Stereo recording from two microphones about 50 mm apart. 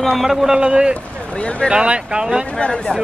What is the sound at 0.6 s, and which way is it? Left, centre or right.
A man's voice, centre.